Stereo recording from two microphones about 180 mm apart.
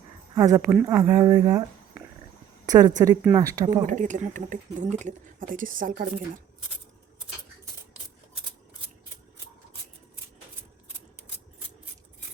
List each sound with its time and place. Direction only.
0.3 s speech: 20° right (ahead or behind)
0.7 s speech: 5° right (ahead or behind)
0.9 s speech: 15° right (ahead or behind)
2.6 s a woman's voice: 20° right (ahead or behind)
3.8 s speech: 45° right (ahead or behind)